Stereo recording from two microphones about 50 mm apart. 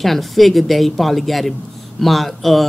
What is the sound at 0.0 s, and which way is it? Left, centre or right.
Speech, centre.